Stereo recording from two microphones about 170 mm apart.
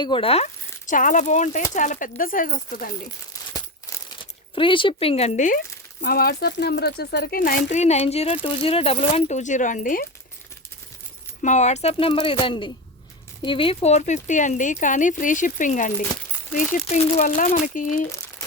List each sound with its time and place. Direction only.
0.0 s speech: 30° left (ahead or behind); by 2.9 s 55° left (ahead or behind)
3.5 s crumpling: 20° left (ahead or behind)
4.5 s speech: 30° left (ahead or behind)
6.0 s speech: 65° left (ahead or behind)
11.4 s speech: 45° left (ahead or behind)